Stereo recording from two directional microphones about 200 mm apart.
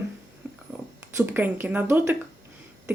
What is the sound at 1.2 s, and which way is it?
Speech, 10° right (ahead or behind).